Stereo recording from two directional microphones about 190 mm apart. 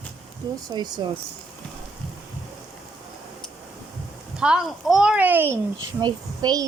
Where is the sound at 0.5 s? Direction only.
20° right (ahead or behind).